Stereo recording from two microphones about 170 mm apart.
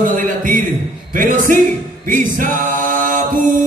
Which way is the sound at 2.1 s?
50° right (ahead or behind).